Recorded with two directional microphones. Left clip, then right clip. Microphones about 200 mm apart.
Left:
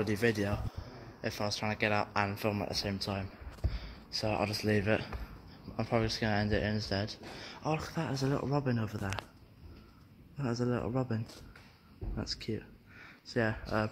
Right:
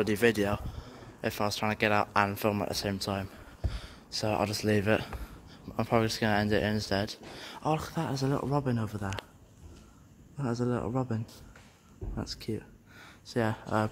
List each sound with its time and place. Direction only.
0.0 s speech: 60° right (ahead or behind); by 5.1 s 40° right (ahead or behind)
5.8 s speech: 50° right (ahead or behind)
7.6 s speech: 25° right (ahead or behind)
10.3 s speech: 15° right (ahead or behind)
12.2 s speech: 15° right (ahead or behind)